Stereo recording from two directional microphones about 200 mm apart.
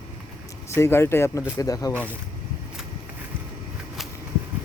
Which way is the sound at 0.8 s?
10° left (ahead or behind).